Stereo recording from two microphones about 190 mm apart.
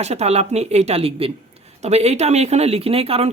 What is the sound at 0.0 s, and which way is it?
Speech, 35° right (ahead or behind).